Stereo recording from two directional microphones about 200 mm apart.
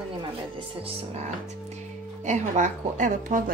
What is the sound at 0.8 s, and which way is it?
A woman's voice, 35° right (ahead or behind).